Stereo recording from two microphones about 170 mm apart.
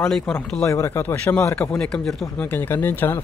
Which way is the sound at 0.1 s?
5° left (ahead or behind).